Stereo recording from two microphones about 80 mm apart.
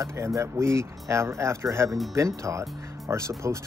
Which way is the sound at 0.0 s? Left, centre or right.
Right.